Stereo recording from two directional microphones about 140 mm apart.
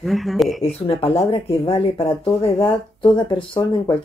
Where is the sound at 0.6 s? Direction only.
45° left (ahead or behind).